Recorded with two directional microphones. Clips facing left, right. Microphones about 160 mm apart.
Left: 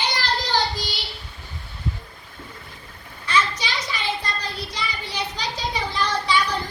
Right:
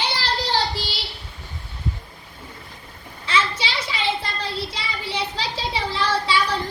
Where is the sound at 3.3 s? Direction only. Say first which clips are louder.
Even; 30° right (ahead or behind).